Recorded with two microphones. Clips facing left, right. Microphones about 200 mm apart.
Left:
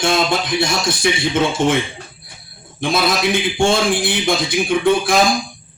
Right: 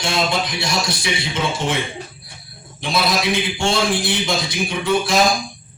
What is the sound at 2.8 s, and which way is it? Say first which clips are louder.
Speech: left 3 dB; 50° left (ahead or behind).